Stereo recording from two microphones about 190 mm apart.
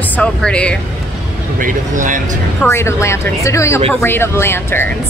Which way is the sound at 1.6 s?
45° right (ahead or behind).